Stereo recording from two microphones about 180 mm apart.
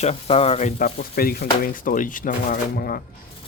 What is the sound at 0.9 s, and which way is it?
Speech, 55° left (ahead or behind).